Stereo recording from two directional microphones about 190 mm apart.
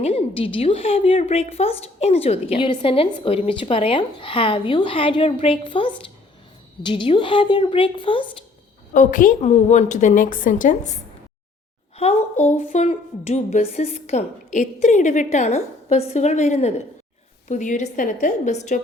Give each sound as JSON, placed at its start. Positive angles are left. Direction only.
{"t": 0.0, "sound": "a woman's voice", "side_deg": 30}
{"t": 8.9, "sound": "a woman's voice", "side_deg": 45}